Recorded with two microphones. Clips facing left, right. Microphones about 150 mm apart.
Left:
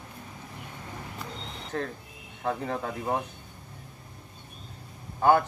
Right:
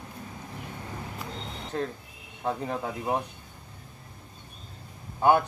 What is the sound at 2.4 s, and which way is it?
Speech, 15° right (ahead or behind).